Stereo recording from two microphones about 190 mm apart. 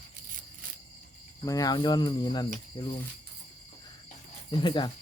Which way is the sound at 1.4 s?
20° left (ahead or behind).